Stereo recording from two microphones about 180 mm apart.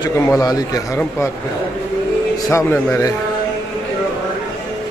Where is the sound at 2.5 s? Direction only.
15° left (ahead or behind).